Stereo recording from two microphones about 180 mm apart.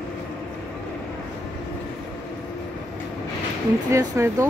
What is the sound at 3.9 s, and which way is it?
Speech, 15° right (ahead or behind).